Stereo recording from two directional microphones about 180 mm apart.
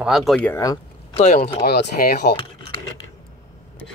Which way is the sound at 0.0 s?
Centre (ahead or behind).